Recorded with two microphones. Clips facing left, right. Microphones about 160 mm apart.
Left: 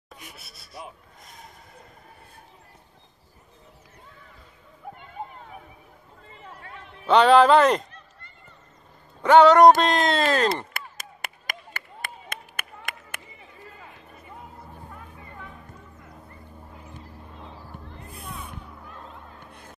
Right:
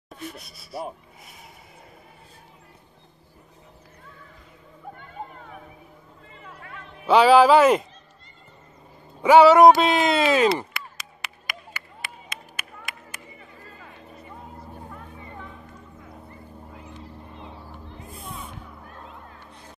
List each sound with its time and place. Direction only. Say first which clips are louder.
0.2 s speech: right 14 dB; 5° left (ahead or behind)
1.2 s neigh: left 3 dB; 10° right (ahead or behind)
6.4 s a sound: even; 30° left (ahead or behind)
7.1 s a man's voice: right 1 dB; 5° right (ahead or behind)
9.2 s speech: right 1 dB; 5° right (ahead or behind)
10.7 s clapping: even; 50° left (ahead or behind)
17.8 s music: right 1 dB; 5° right (ahead or behind)
19.4 s music: even; 55° left (ahead or behind)